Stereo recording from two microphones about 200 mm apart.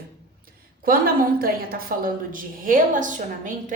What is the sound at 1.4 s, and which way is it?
A woman's voice, 45° right (ahead or behind).